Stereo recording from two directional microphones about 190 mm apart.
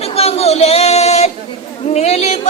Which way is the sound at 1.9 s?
35° left (ahead or behind).